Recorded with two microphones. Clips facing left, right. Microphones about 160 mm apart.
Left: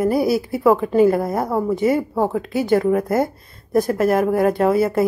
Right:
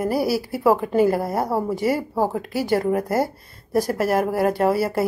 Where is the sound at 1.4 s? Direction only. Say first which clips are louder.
Left 2 dB; 5° right (ahead or behind).